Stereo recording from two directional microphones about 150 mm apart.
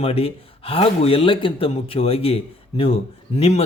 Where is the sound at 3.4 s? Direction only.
45° left (ahead or behind).